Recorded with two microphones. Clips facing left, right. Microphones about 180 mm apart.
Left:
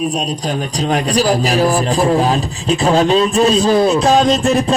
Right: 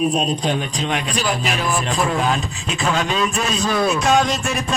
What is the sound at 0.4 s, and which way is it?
A man's voice, 40° left (ahead or behind).